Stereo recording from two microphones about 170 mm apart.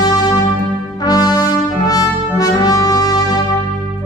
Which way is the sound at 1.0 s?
20° left (ahead or behind).